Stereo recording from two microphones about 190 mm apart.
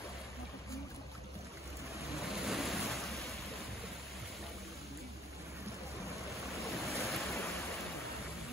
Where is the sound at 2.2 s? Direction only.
Centre (ahead or behind).